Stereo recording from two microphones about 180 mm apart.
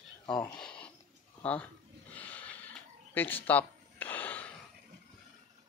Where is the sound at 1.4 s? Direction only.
5° left (ahead or behind).